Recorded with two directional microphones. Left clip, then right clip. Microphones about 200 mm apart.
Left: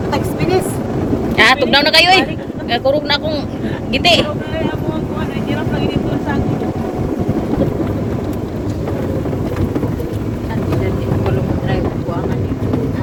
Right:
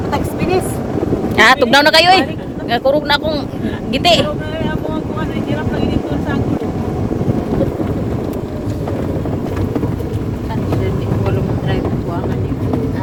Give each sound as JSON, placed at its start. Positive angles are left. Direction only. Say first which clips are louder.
{"t": 1.4, "sound": "speech", "louder": "right 2 dB", "side_deg": -30}